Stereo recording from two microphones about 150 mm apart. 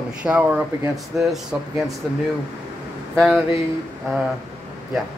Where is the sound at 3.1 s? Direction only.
5° right (ahead or behind).